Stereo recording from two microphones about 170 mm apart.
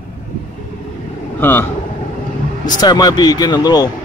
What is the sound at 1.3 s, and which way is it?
Speech, 10° left (ahead or behind).